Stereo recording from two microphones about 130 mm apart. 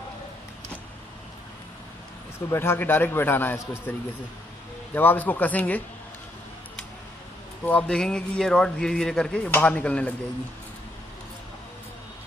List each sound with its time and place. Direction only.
2.5 s a man's voice: 20° left (ahead or behind)
4.9 s a man's voice: 15° left (ahead or behind)
7.6 s a man's voice: 10° left (ahead or behind)